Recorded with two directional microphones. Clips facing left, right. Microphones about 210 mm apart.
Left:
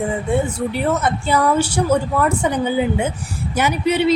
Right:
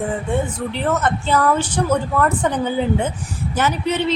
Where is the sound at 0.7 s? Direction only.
10° left (ahead or behind).